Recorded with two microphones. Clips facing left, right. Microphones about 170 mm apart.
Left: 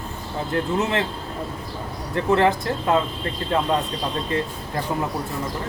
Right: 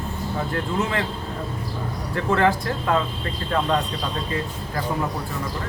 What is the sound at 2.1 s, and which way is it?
Speech, 20° left (ahead or behind).